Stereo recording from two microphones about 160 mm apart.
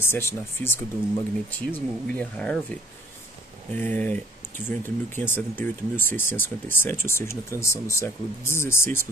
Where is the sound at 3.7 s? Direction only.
10° left (ahead or behind).